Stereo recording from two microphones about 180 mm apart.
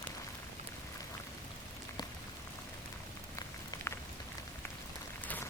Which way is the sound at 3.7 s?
20° left (ahead or behind).